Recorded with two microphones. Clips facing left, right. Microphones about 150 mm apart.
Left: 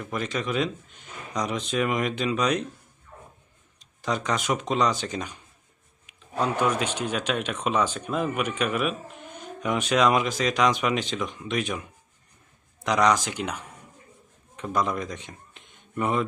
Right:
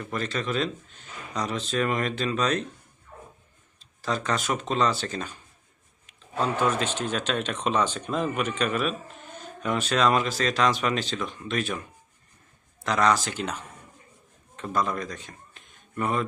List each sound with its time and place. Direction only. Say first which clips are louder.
0.0 s speech: left 1 dB; 10° left (ahead or behind)
3.8 s speech: left 1 dB; 15° left (ahead or behind)